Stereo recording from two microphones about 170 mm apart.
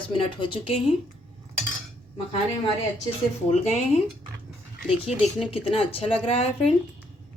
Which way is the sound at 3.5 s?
40° left (ahead or behind).